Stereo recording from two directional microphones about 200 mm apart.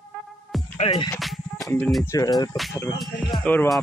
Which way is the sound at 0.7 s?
30° left (ahead or behind).